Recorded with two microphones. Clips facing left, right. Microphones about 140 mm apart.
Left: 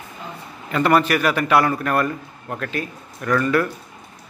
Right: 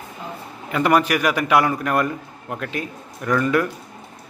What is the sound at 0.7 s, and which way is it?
A man's voice, 10° right (ahead or behind).